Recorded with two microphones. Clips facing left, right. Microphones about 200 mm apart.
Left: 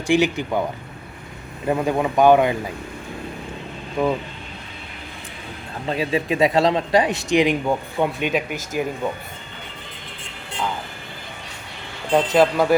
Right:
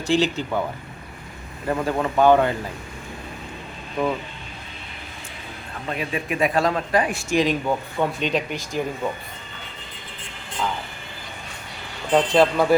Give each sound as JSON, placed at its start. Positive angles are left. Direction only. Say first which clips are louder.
{"t": 0.1, "sound": "speech", "louder": "left 2 dB", "side_deg": 15}
{"t": 1.6, "sound": "speech", "louder": "left 3 dB", "side_deg": 20}
{"t": 4.0, "sound": "speech", "louder": "left 3 dB", "side_deg": 10}
{"t": 5.9, "sound": "a man's voice", "louder": "left 5 dB", "side_deg": 25}
{"t": 12.1, "sound": "speech", "louder": "left 1 dB", "side_deg": 5}